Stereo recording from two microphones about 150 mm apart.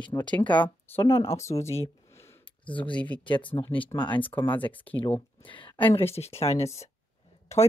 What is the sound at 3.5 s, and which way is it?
Speech, 35° left (ahead or behind).